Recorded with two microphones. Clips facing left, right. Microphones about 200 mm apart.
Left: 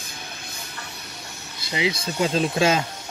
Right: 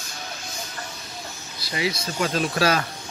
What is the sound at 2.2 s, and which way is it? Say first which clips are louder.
Speech: left 2 dB; 25° left (ahead or behind).